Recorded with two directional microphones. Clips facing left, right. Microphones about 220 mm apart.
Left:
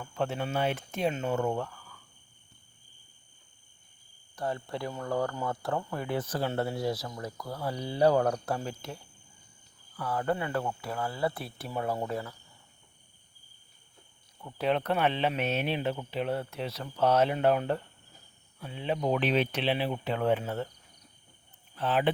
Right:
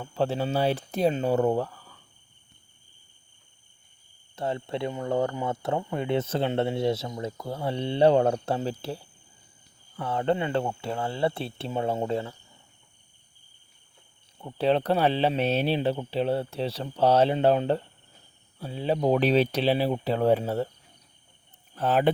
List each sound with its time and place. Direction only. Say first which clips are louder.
0.0 s speech: right 5 dB; 30° right (ahead or behind)
4.4 s speech: right 4 dB; 25° right (ahead or behind)
14.3 s speech: right 5 dB; 30° right (ahead or behind)
21.8 s speech: right 5 dB; 45° right (ahead or behind)